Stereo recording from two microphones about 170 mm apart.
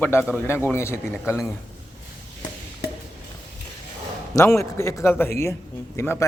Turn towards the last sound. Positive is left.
turn(degrees=15)  # may be behind; listen again after turning